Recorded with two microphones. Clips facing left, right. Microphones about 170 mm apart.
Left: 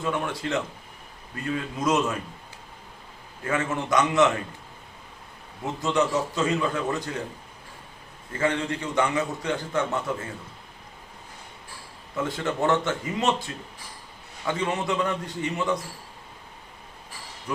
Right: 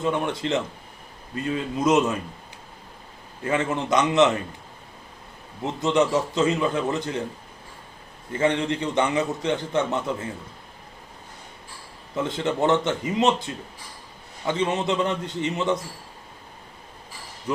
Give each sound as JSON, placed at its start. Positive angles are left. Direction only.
{"t": 0.0, "sound": "a man's voice", "side_deg": -20}
{"t": 3.4, "sound": "a man's voice", "side_deg": -20}
{"t": 5.8, "sound": "a man's voice", "side_deg": -20}
{"t": 8.3, "sound": "a man's voice", "side_deg": -20}
{"t": 12.1, "sound": "a man's voice", "side_deg": -20}
{"t": 14.4, "sound": "a man's voice", "side_deg": -20}